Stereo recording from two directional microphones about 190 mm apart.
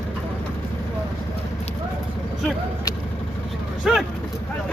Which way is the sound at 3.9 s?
5° right (ahead or behind).